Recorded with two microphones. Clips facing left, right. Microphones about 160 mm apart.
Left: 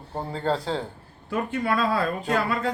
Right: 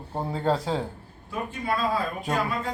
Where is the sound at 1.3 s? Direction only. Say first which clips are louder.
Left 4 dB; 75° left (ahead or behind).